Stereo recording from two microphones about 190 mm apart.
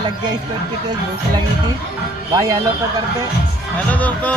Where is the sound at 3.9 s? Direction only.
10° left (ahead or behind).